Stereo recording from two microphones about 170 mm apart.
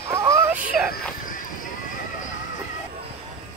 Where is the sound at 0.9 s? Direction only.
55° left (ahead or behind).